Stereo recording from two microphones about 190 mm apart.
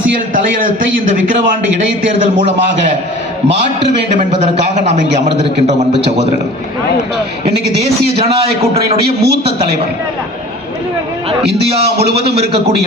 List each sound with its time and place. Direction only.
0.6 s a man's voice: 45° right (ahead or behind)
3.5 s a man's voice: 65° right (ahead or behind)
9.0 s a man's voice: 55° right (ahead or behind)
11.4 s a man's voice: 60° right (ahead or behind)
12.1 s a man's voice: 30° right (ahead or behind)